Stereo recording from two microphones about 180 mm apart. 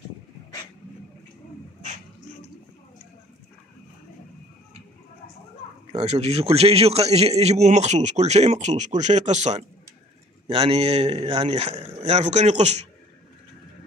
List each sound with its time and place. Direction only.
5.9 s a man's voice: 35° right (ahead or behind)